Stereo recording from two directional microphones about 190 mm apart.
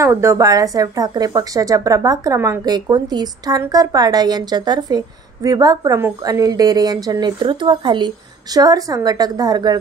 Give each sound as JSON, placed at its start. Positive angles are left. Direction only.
{"t": 0.0, "sound": "speech", "side_deg": -15}